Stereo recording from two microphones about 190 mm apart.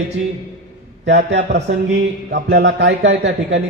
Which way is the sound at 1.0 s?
65° right (ahead or behind).